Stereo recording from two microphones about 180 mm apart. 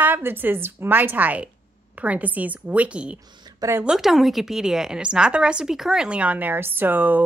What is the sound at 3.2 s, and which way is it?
Speech, 25° right (ahead or behind).